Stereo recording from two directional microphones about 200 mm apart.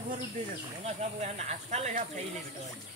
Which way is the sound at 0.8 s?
35° right (ahead or behind).